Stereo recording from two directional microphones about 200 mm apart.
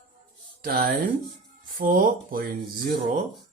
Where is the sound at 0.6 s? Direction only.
45° right (ahead or behind).